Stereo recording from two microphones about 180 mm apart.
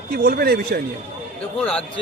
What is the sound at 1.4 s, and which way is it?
Speech, 5° left (ahead or behind).